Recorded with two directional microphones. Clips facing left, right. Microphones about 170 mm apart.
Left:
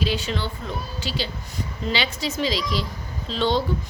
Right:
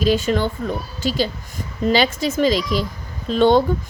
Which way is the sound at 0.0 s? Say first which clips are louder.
Right 8 dB; 45° right (ahead or behind).